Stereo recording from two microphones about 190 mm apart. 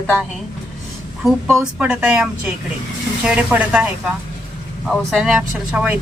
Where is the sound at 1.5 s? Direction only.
10° right (ahead or behind).